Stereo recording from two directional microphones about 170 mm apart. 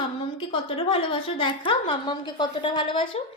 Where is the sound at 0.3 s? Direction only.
30° left (ahead or behind).